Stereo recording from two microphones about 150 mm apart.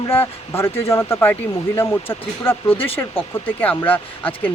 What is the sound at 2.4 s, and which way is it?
Speech, 15° left (ahead or behind).